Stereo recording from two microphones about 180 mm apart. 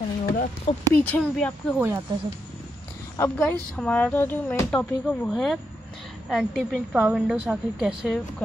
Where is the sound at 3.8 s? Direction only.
5° left (ahead or behind).